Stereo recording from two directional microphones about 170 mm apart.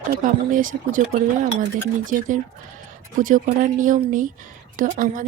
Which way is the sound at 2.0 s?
50° right (ahead or behind).